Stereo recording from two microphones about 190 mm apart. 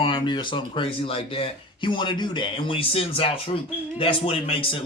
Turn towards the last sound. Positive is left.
turn(degrees=30)  # may be behind; listen again after turning